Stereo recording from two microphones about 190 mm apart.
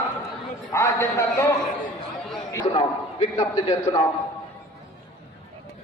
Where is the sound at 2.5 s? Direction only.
25° left (ahead or behind).